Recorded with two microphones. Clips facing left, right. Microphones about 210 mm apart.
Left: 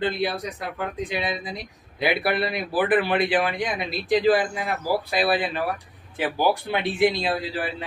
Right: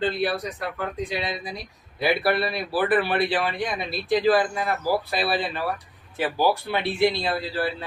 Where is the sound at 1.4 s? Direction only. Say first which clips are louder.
Left 1 dB; 20° left (ahead or behind).